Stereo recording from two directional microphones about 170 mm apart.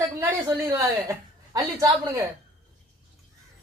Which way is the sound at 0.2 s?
20° right (ahead or behind).